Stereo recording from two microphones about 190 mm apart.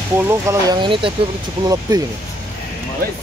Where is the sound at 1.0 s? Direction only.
25° right (ahead or behind).